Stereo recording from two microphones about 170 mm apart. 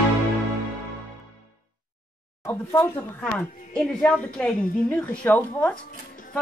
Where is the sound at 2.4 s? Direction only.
15° left (ahead or behind).